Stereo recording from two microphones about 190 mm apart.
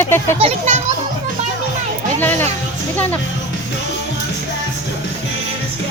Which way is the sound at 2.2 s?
10° left (ahead or behind).